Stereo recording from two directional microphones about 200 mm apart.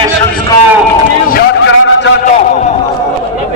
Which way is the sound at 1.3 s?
55° left (ahead or behind).